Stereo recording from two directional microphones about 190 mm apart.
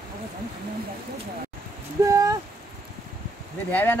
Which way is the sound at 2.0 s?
15° right (ahead or behind).